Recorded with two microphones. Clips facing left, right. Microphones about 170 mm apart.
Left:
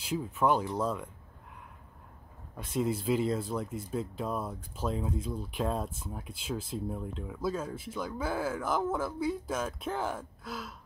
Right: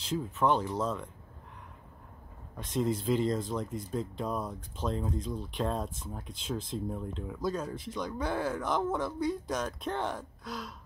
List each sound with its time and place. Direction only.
0.0 s speech: 10° left (ahead or behind)
2.5 s speech: 5° left (ahead or behind)